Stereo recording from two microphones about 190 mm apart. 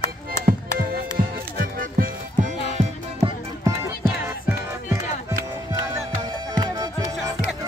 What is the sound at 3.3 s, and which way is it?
Music, 15° right (ahead or behind).